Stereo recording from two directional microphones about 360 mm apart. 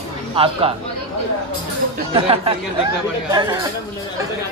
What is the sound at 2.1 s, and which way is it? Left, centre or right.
Speech, centre.